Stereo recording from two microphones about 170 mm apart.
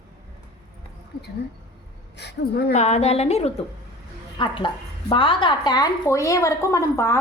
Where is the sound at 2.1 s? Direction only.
80° left.